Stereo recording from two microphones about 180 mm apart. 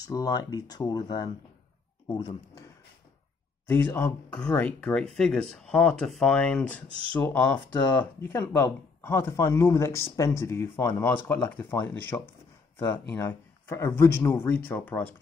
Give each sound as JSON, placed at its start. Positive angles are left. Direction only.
{"t": 0.0, "sound": "speech", "side_deg": 20}
{"t": 3.6, "sound": "speech", "side_deg": 10}